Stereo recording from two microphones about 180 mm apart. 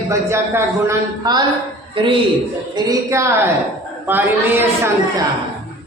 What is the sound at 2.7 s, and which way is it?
Speech, 20° right (ahead or behind).